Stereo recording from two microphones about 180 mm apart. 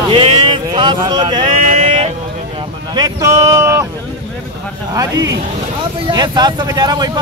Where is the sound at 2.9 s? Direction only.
20° right (ahead or behind).